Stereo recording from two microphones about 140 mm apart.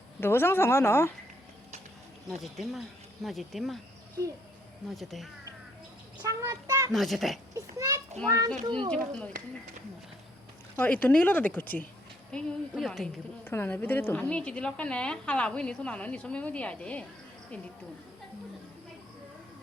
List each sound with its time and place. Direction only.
0.2 s a woman's voice: 15° left (ahead or behind)
2.4 s a woman's voice: centre (ahead or behind)
4.9 s a woman's voice: centre (ahead or behind)
6.2 s child singing: 25° right (ahead or behind)
6.9 s a woman's voice: centre (ahead or behind)
7.5 s a child's voice: 20° right (ahead or behind)
8.6 s speech: 35° right (ahead or behind)
8.9 s a woman's voice: 5° left (ahead or behind)
10.8 s a woman's voice: 10° left (ahead or behind)
11.6 s speech: 90° left
12.3 s a woman's voice: 5° left (ahead or behind)
13.4 s a woman's voice: 15° left (ahead or behind)